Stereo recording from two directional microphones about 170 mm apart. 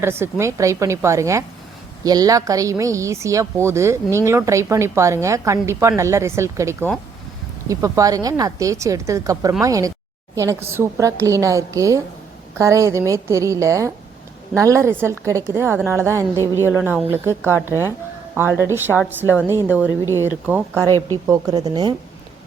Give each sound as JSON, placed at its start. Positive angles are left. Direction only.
{"t": 0.0, "sound": "speech", "side_deg": -15}
{"t": 16.6, "sound": "speech", "side_deg": 15}
{"t": 17.1, "sound": "speech", "side_deg": -15}
{"t": 21.2, "sound": "speech", "side_deg": -20}